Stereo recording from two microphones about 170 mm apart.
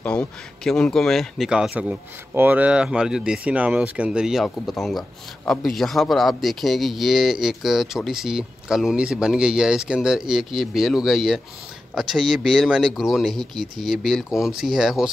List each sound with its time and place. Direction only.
0.0 s a man's voice: 5° left (ahead or behind)